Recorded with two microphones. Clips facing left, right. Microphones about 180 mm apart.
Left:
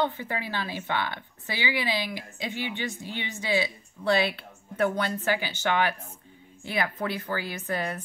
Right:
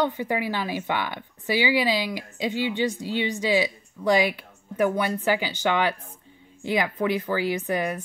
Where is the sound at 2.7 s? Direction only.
15° right (ahead or behind).